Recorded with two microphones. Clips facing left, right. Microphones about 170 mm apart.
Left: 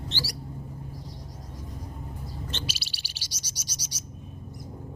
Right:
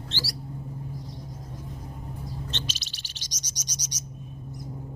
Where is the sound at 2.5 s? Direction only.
10° left (ahead or behind).